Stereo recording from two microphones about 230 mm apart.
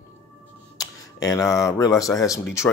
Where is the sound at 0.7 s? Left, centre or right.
Centre.